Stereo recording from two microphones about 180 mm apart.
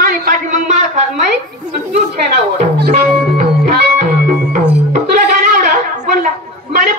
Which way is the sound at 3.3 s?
45° right (ahead or behind).